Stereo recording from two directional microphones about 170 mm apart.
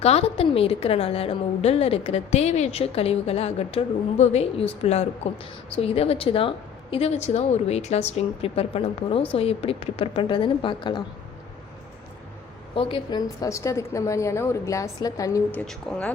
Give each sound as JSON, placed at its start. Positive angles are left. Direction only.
{"t": 0.0, "sound": "a woman's voice", "side_deg": 35}
{"t": 12.7, "sound": "a woman's voice", "side_deg": 30}
{"t": 15.5, "sound": "speech", "side_deg": 5}